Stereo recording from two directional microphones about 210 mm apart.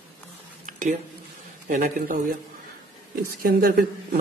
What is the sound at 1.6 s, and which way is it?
Speech, 40° right (ahead or behind).